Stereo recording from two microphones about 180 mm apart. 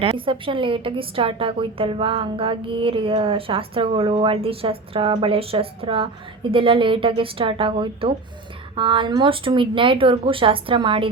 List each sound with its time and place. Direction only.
0.0 s a woman's voice: 30° right (ahead or behind)